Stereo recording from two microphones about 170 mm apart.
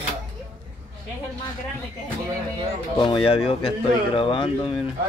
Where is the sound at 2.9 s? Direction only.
25° left (ahead or behind).